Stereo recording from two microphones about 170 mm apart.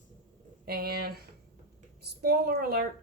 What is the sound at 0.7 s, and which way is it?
A woman's voice, 65° right (ahead or behind).